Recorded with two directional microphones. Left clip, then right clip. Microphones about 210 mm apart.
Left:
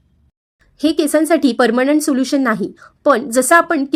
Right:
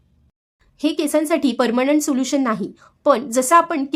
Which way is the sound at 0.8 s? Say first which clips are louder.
Left 4 dB; 15° left (ahead or behind).